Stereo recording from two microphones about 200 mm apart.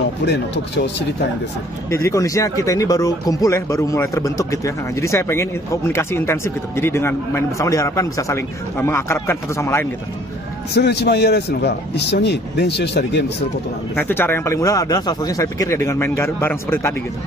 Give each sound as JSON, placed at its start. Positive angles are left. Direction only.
{"t": 0.2, "sound": "speech", "side_deg": 55}
{"t": 1.9, "sound": "speech", "side_deg": 15}
{"t": 10.7, "sound": "speech", "side_deg": 55}
{"t": 13.9, "sound": "speech", "side_deg": 10}